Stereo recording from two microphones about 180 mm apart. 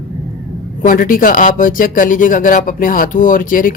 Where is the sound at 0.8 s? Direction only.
50° left (ahead or behind).